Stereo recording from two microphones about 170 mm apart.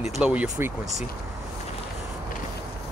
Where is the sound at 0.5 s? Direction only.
20° right (ahead or behind).